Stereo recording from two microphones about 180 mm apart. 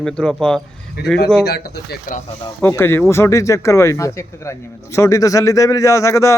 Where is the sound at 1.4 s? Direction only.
65° left (ahead or behind).